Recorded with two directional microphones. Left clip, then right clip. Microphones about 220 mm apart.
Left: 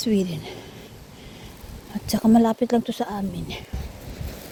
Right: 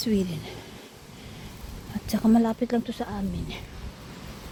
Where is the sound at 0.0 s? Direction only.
15° left (ahead or behind).